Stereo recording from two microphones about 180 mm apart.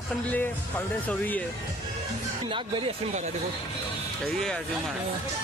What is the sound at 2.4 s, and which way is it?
Speech, 30° right (ahead or behind).